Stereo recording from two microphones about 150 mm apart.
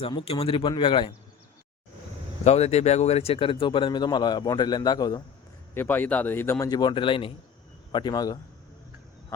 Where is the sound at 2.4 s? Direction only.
45° left (ahead or behind); by 5.2 s 25° left (ahead or behind).